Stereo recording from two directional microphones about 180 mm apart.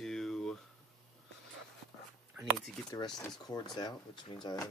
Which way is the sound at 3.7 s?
25° left (ahead or behind).